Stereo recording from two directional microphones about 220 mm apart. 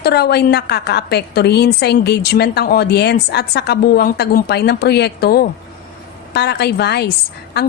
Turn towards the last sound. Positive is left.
turn(degrees=50)  # may be behind; listen again after turning